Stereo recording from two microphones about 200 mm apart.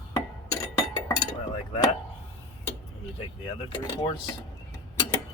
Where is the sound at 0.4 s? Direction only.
15° left (ahead or behind).